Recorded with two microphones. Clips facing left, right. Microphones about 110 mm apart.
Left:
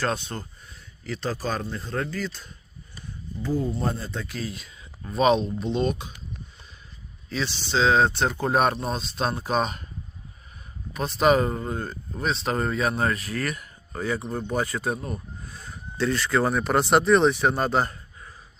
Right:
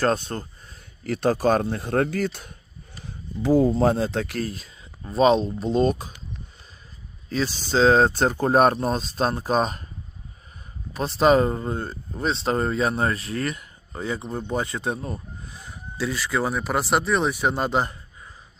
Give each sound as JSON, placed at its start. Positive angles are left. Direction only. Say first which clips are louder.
{"t": 0.0, "sound": "speech", "louder": "right 5 dB", "side_deg": -45}
{"t": 1.0, "sound": "speech", "louder": "right 9 dB", "side_deg": -55}
{"t": 3.0, "sound": "a sound", "louder": "right 5 dB", "side_deg": -90}
{"t": 3.8, "sound": "speech", "louder": "right 9 dB", "side_deg": -90}
{"t": 4.4, "sound": "speech", "louder": "right 2 dB", "side_deg": -35}
{"t": 7.3, "sound": "speech", "louder": "right 3 dB", "side_deg": -40}
{"t": 10.9, "sound": "speech", "louder": "right 2 dB", "side_deg": -30}